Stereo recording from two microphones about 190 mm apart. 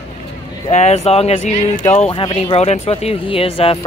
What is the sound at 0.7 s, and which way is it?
Speech, 35° left (ahead or behind).